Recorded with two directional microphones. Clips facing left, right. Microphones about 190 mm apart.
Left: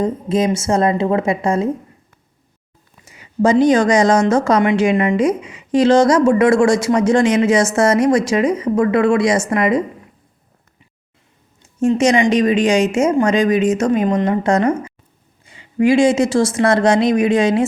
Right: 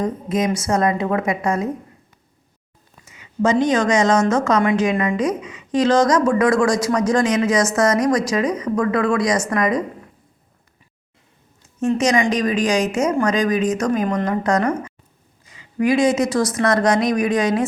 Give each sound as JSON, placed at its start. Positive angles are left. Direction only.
{"t": 0.0, "sound": "a woman's voice", "side_deg": 30}
{"t": 3.0, "sound": "a woman's voice", "side_deg": 35}
{"t": 11.8, "sound": "a woman's voice", "side_deg": 30}